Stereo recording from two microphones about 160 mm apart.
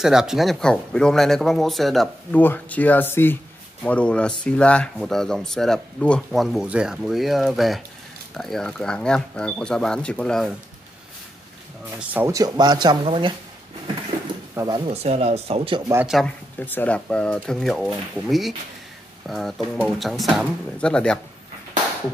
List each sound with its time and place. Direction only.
0.0 s speech: 5° right (ahead or behind)
2.4 s speech: 10° left (ahead or behind)
12.0 s speech: 10° right (ahead or behind)
12.3 s speech: 20° right (ahead or behind)
14.5 s speech: 20° right (ahead or behind)
14.9 s speech: 40° right (ahead or behind)
16.5 s speech: 10° left (ahead or behind)